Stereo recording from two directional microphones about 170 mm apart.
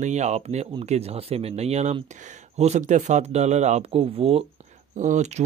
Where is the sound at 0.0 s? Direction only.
45° right (ahead or behind).